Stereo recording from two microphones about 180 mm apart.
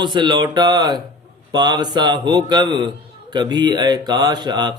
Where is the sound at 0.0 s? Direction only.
25° right (ahead or behind).